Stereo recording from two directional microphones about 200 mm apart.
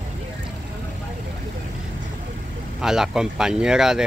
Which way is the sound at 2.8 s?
Centre (ahead or behind).